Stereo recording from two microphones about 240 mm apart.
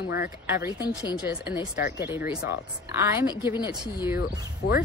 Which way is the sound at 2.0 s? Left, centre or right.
Centre.